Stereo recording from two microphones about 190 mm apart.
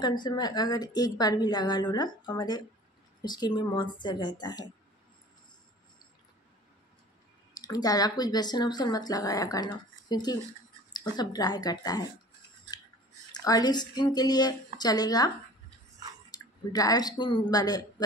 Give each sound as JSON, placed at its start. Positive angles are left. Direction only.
{"t": 0.0, "sound": "speech", "side_deg": 20}
{"t": 7.6, "sound": "speech", "side_deg": 20}
{"t": 13.3, "sound": "speech", "side_deg": 20}